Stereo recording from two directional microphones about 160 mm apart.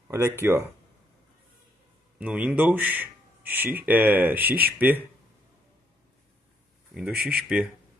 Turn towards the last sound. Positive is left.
turn(degrees=-5)  # may be behind; listen again after turning